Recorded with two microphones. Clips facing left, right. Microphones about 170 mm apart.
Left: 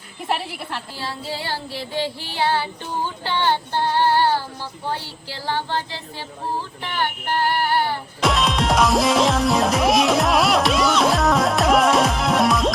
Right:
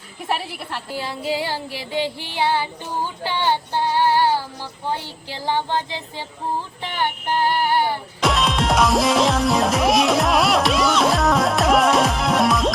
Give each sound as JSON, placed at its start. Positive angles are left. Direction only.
{"t": 0.7, "sound": "child singing", "side_deg": -15}
{"t": 3.2, "sound": "female singing", "side_deg": -10}
{"t": 4.9, "sound": "child singing", "side_deg": -15}
{"t": 8.2, "sound": "music", "side_deg": 0}